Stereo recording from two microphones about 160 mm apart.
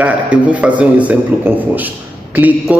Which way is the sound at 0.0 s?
10° right (ahead or behind).